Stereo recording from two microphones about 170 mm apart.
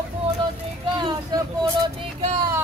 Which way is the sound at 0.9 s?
25° right (ahead or behind).